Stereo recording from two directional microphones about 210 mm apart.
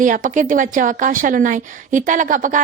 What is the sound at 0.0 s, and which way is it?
A woman's voice, 40° right (ahead or behind).